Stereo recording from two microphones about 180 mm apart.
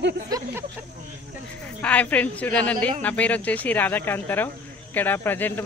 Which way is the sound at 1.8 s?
10° left (ahead or behind).